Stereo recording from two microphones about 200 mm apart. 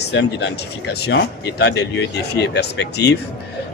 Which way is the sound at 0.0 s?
60° left (ahead or behind).